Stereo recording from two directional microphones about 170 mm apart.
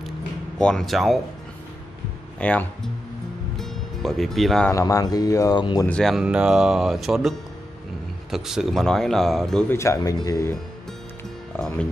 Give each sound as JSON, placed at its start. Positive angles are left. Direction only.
{"t": 0.6, "sound": "speech", "side_deg": 5}
{"t": 2.4, "sound": "speech", "side_deg": 5}
{"t": 3.5, "sound": "music", "side_deg": 0}
{"t": 4.7, "sound": "speech", "side_deg": 20}
{"t": 5.9, "sound": "speech", "side_deg": 0}
{"t": 9.8, "sound": "speech", "side_deg": 20}